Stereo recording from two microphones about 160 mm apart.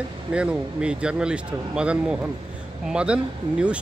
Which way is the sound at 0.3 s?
5° right (ahead or behind).